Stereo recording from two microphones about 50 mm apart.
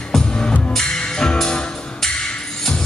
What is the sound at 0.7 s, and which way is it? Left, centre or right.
Music, centre.